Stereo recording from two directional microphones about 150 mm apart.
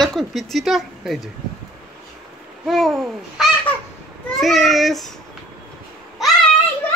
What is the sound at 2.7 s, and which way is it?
Speech, centre (ahead or behind).